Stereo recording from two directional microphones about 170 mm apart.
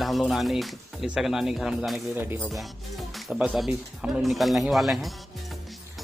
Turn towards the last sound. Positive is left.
turn(degrees=0)  # may be behind; listen again after turning